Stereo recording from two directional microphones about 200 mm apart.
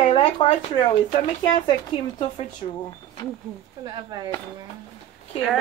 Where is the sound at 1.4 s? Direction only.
25° left (ahead or behind).